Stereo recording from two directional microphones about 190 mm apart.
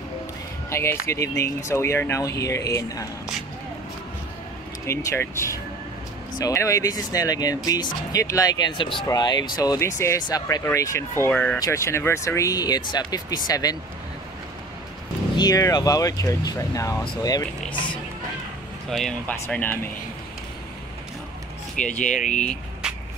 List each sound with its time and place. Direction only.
0.7 s speech: 15° left (ahead or behind)
4.8 s speech: 15° left (ahead or behind)
15.3 s speech: 20° left (ahead or behind)
18.9 s speech: centre (ahead or behind)
21.7 s speech: 5° left (ahead or behind)
22.0 s speech: 40° left (ahead or behind)
22.5 s vehicle: 5° right (ahead or behind)